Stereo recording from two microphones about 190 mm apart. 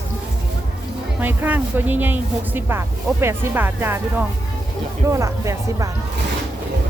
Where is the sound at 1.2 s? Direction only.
10° right (ahead or behind).